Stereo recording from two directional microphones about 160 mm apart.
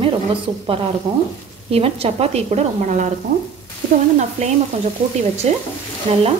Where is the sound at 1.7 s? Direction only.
40° right (ahead or behind).